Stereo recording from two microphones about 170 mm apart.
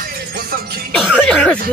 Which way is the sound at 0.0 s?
60° right (ahead or behind).